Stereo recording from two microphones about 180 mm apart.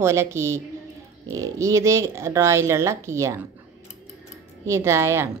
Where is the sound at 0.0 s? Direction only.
15° right (ahead or behind).